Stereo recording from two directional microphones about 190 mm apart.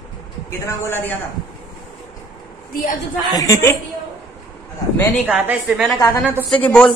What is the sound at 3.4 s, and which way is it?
Speech, 15° left (ahead or behind).